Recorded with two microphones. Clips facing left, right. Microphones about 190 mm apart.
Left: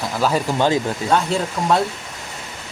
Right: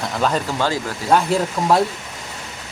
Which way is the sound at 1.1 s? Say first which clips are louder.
Right 3 dB; 5° right (ahead or behind).